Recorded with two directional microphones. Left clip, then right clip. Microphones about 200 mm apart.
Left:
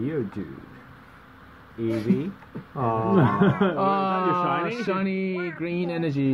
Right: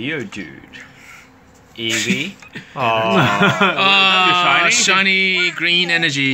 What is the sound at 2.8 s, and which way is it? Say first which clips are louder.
Speech: right 9 dB; 25° left (ahead or behind).